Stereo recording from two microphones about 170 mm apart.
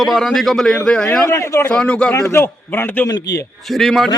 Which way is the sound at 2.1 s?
15° left (ahead or behind).